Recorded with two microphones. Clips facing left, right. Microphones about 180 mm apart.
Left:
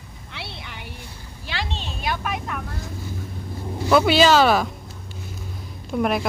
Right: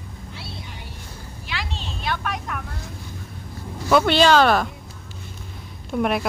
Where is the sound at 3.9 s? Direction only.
5° left (ahead or behind).